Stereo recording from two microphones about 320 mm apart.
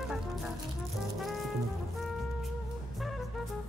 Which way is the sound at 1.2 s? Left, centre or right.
Centre.